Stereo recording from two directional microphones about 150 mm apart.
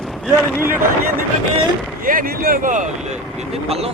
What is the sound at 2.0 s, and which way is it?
Speech, 70° right (ahead or behind).